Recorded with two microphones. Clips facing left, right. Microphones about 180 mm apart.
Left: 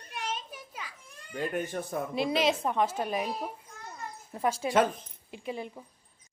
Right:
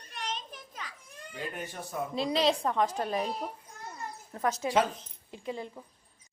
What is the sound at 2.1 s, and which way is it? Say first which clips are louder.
Speech: even; 20° left (ahead or behind).